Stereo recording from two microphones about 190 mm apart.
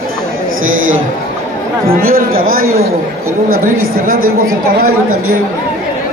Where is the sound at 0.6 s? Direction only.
90° right.